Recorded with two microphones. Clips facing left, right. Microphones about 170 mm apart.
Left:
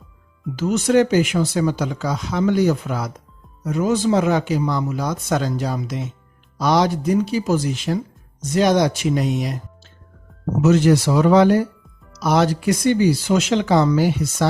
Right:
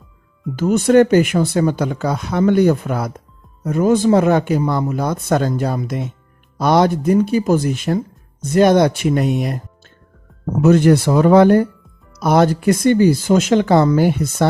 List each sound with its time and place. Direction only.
0.5 s speech: 55° right (ahead or behind)
10.6 s speech: 55° right (ahead or behind)